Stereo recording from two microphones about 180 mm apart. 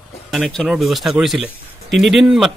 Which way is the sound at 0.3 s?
Centre (ahead or behind).